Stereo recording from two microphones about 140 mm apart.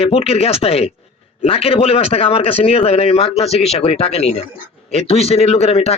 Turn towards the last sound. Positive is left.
turn(degrees=45)  # may be behind; listen again after turning